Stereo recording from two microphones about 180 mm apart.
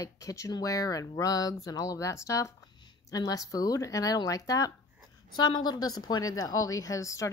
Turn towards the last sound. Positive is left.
turn(degrees=15)  # may be behind; listen again after turning